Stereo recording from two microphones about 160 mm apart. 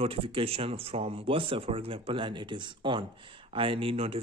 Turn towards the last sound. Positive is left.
turn(degrees=-35)  # may be behind; listen again after turning